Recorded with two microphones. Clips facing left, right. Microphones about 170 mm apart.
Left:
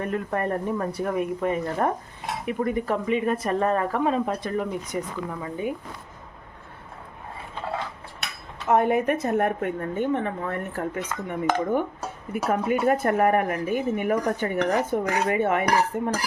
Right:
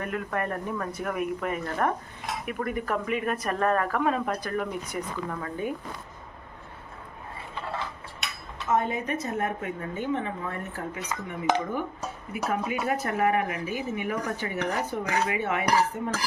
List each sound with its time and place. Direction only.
0.0 s speech: 30° left (ahead or behind); by 5.7 s 15° left (ahead or behind)
8.7 s a woman's voice: 65° left (ahead or behind)